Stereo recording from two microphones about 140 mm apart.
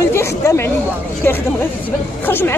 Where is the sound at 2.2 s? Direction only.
15° left (ahead or behind).